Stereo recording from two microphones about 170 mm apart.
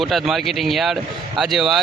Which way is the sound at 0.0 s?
Centre (ahead or behind).